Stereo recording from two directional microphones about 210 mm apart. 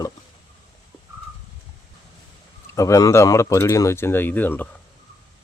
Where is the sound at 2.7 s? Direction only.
15° left (ahead or behind).